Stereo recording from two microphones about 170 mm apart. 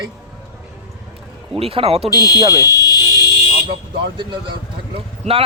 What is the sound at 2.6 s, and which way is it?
Fire alarm, 20° left (ahead or behind).